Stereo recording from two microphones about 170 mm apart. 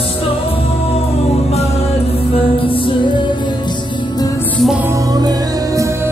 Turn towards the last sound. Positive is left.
turn(degrees=-20)  # may be behind; listen again after turning